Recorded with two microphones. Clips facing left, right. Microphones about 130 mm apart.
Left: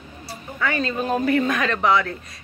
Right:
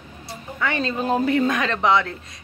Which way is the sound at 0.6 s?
25° right (ahead or behind).